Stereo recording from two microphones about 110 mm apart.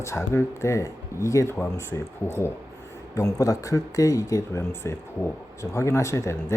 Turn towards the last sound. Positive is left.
turn(degrees=25)  # may be behind; listen again after turning